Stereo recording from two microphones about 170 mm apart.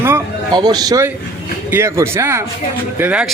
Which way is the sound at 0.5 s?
25° right (ahead or behind).